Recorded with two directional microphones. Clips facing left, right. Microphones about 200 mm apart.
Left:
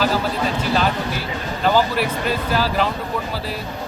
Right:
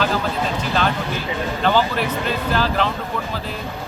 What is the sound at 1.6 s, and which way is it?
Speech, 5° left (ahead or behind).